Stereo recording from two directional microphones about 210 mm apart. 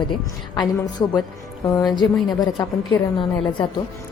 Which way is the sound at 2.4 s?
20° left (ahead or behind).